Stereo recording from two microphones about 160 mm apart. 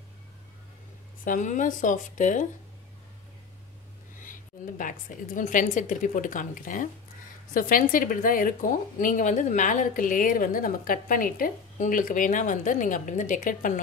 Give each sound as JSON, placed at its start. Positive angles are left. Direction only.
{"t": 1.2, "sound": "a woman's voice", "side_deg": 55}
{"t": 4.2, "sound": "a woman's voice", "side_deg": 55}